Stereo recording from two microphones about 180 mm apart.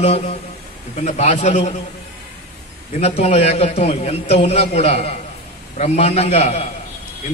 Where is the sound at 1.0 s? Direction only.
35° left (ahead or behind).